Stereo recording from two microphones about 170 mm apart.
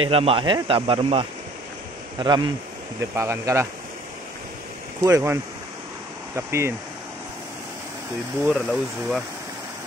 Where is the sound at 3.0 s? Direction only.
15° right (ahead or behind).